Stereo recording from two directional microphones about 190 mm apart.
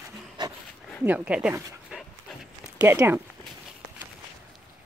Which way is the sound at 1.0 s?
5° right (ahead or behind).